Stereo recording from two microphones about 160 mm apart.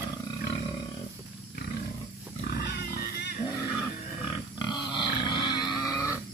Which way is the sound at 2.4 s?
75° left (ahead or behind).